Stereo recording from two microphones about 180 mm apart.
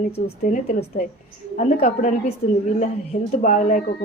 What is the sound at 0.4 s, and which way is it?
Speech, 45° left (ahead or behind).